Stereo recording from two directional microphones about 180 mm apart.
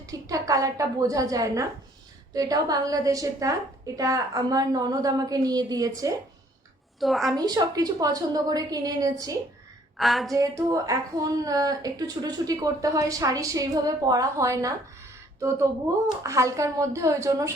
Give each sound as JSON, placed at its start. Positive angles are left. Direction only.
{"t": 0.0, "sound": "a woman's voice", "side_deg": -20}
{"t": 7.0, "sound": "a woman's voice", "side_deg": 0}
{"t": 7.3, "sound": "a woman's voice", "side_deg": -20}
{"t": 10.0, "sound": "a woman's voice", "side_deg": 0}
{"t": 10.3, "sound": "a woman's voice", "side_deg": -20}